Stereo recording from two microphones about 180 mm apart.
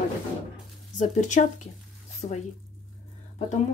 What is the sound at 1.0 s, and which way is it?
Speech, 45° left (ahead or behind).